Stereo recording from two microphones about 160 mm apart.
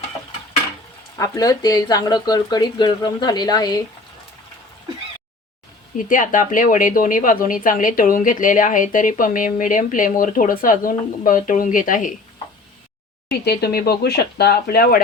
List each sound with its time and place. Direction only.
1.2 s speech: 20° left (ahead or behind)
6.1 s speech: 55° left (ahead or behind)
13.4 s speech: 90° left; by 15.0 s 70° left (ahead or behind)